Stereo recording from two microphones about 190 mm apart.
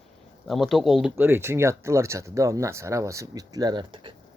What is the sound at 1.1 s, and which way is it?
Speech, 10° right (ahead or behind).